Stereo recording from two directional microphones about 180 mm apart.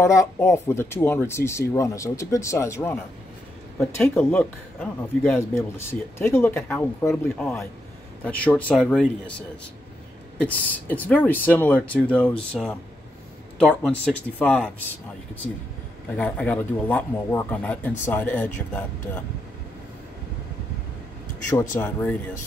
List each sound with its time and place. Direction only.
0.0 s speech: 15° left (ahead or behind)
10.4 s speech: 10° left (ahead or behind)
16.2 s speech: 10° left (ahead or behind)
21.5 s speech: 15° left (ahead or behind)